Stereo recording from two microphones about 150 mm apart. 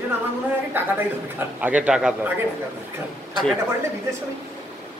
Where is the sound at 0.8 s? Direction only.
15° right (ahead or behind).